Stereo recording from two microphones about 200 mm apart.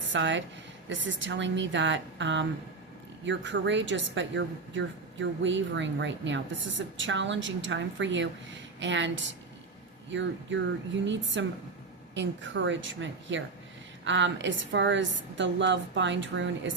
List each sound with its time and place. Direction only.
0.1 s a woman's voice: 65° right (ahead or behind)